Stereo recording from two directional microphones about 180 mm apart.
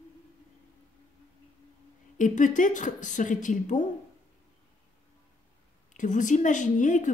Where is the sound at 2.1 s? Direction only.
45° left (ahead or behind).